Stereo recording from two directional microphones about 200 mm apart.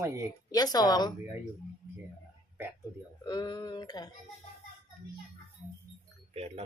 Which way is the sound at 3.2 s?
20° left (ahead or behind).